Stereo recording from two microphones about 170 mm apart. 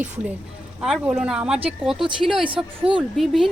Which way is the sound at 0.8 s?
5° right (ahead or behind).